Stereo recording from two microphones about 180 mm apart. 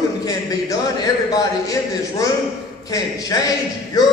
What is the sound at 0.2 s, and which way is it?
A man's voice, 20° left (ahead or behind).